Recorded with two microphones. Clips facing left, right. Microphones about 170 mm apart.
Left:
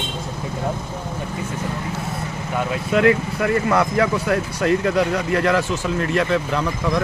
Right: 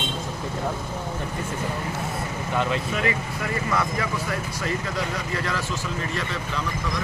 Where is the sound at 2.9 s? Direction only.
65° left (ahead or behind).